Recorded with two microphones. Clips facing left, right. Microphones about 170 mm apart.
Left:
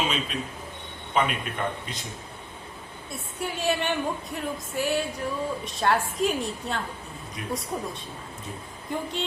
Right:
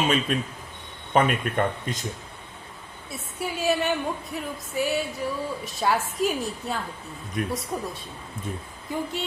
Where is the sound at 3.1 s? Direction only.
Centre (ahead or behind).